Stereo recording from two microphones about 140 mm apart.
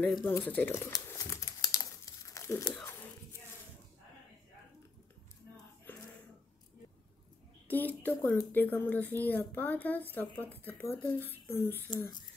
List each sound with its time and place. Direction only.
0.0 s speech: 10° left (ahead or behind)
1.1 s crumpling: 20° left (ahead or behind)
2.7 s tearing: 15° left (ahead or behind)
5.9 s a sound: 10° left (ahead or behind)
7.6 s speech: 10° left (ahead or behind)